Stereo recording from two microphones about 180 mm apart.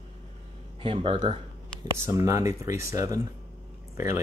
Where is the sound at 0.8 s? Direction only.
30° right (ahead or behind).